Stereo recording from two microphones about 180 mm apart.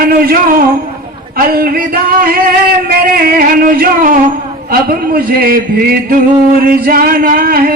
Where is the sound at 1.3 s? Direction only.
55° right (ahead or behind).